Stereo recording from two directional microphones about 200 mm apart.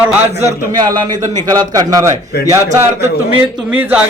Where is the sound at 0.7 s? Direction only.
20° right (ahead or behind).